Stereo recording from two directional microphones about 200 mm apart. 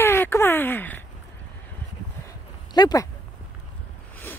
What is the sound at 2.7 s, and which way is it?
Speech, 20° left (ahead or behind).